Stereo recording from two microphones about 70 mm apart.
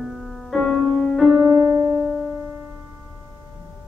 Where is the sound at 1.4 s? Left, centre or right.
Right.